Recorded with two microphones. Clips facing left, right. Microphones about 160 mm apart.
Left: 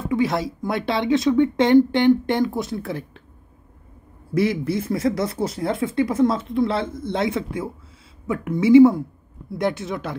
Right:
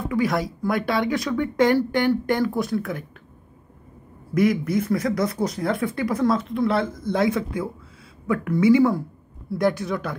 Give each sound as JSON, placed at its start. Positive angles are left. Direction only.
{"t": 0.1, "sound": "speech", "side_deg": 25}
{"t": 4.3, "sound": "speech", "side_deg": 30}